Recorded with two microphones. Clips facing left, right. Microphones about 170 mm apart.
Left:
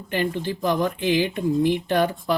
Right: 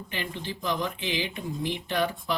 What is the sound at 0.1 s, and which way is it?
Speech, 50° left (ahead or behind).